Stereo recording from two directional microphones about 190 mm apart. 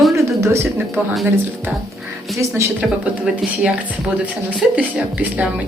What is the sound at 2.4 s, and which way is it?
A woman's voice, 15° right (ahead or behind).